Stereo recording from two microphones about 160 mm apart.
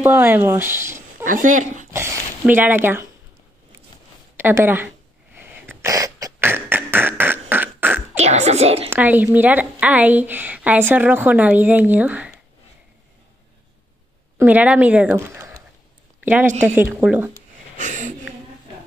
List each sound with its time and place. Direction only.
0.0 s a woman's voice: 15° right (ahead or behind)
0.9 s dog: 55° right (ahead or behind)
1.9 s speech: 15° right (ahead or behind)
4.4 s throat clearing: 15° right (ahead or behind)
8.2 s speech: 45° right (ahead or behind)
8.9 s a woman's voice: 10° right (ahead or behind)
14.4 s a woman's voice: 10° right (ahead or behind)
16.6 s a woman's voice: 10° right (ahead or behind)
17.7 s a sound: 50° right (ahead or behind)